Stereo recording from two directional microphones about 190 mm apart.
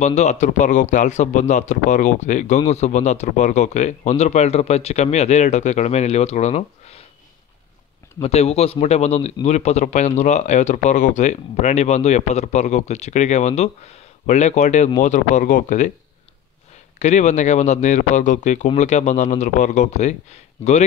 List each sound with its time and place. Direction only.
0.0 s speech: 35° left (ahead or behind)
8.2 s speech: 35° left (ahead or behind)
17.0 s speech: 40° left (ahead or behind)